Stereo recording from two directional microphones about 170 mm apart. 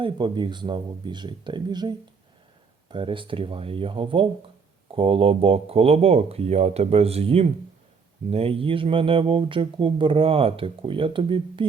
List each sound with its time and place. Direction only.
0.0 s speech: 30° right (ahead or behind)